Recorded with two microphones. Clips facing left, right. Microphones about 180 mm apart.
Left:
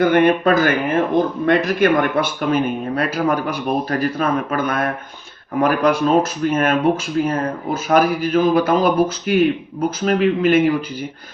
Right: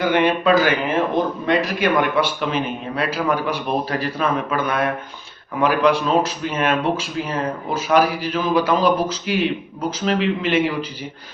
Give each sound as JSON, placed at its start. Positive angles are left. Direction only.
{"t": 0.0, "sound": "speech", "side_deg": 50}